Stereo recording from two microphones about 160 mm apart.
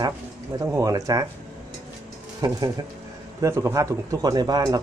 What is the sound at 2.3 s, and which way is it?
Speech, 20° right (ahead or behind).